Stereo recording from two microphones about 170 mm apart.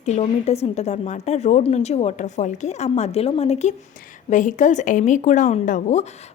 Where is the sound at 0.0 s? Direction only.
40° left (ahead or behind).